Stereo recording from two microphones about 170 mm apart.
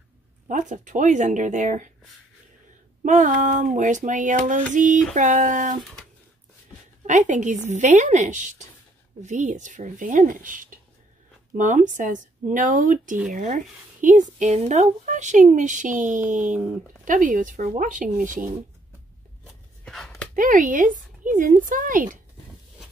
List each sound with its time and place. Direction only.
0.5 s speech: 50° right (ahead or behind)
3.0 s speech: 50° right (ahead or behind)
7.1 s speech: 45° right (ahead or behind)
19.4 s chopping: centre (ahead or behind)
20.3 s speech: 50° right (ahead or behind)